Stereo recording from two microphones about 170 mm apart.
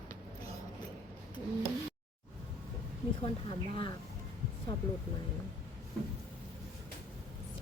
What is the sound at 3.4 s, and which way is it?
Speech, 30° left (ahead or behind).